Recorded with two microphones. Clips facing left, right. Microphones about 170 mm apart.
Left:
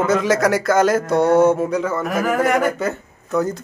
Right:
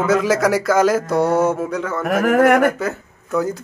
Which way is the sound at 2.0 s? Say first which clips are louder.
Right 8 dB; 60° right (ahead or behind).